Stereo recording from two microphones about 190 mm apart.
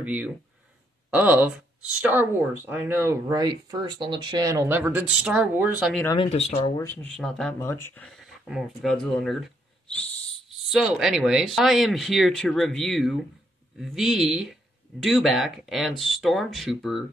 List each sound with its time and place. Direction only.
0.0 s speech: 5° right (ahead or behind)
6.1 s speech: 35° left (ahead or behind)
6.8 s speech: 10° left (ahead or behind)
7.6 s speech: 15° left (ahead or behind)
10.7 s speech: 5° right (ahead or behind)